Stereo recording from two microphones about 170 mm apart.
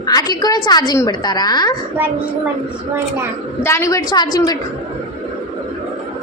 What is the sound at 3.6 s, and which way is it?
Speech, 15° left (ahead or behind).